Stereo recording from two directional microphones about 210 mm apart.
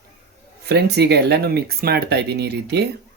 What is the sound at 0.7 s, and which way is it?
Speech, 50° right (ahead or behind).